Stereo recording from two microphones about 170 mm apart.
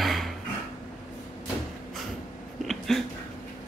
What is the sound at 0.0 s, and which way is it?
Hammer, centre (ahead or behind).